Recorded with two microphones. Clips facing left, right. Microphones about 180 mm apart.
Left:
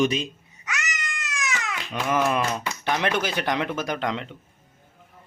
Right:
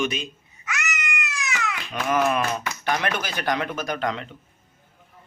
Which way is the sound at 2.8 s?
25° left (ahead or behind).